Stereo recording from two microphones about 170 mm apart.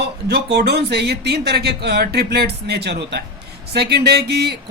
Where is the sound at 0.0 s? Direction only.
75° right (ahead or behind).